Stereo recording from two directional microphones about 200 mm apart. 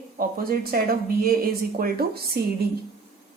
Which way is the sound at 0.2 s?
45° right (ahead or behind).